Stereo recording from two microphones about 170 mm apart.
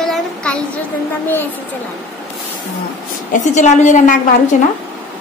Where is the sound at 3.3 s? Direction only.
45° left (ahead or behind).